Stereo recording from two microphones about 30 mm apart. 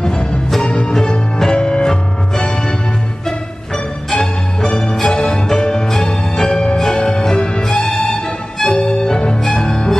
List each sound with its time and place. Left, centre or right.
0.0 s music: left
3.3 s music: centre; by 7.6 s left
7.6 s music: centre
8.7 s music: left